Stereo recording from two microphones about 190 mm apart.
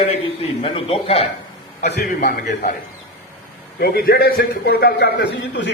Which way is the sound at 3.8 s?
55° left (ahead or behind).